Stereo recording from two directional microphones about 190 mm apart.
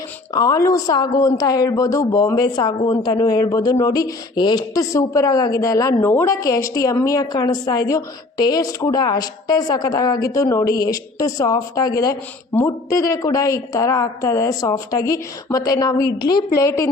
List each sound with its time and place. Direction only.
0.3 s a woman's voice: 20° left (ahead or behind)